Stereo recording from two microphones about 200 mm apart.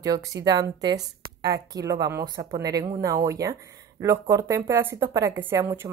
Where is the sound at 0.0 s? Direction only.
15° right (ahead or behind).